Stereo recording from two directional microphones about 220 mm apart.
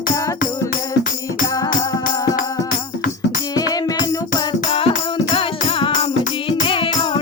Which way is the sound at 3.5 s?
15° left (ahead or behind).